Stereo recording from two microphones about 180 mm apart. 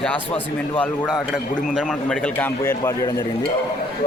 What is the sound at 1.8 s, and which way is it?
A man's voice, 5° left (ahead or behind).